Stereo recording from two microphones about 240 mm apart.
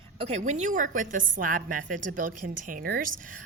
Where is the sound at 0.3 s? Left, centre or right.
Right.